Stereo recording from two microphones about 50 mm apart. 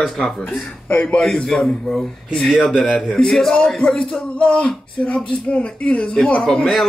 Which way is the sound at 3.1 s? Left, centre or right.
Centre.